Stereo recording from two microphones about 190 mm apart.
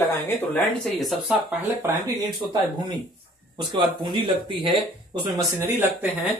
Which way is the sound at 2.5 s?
20° right (ahead or behind).